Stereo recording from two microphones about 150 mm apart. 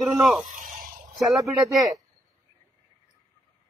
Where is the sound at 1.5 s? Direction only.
Centre (ahead or behind).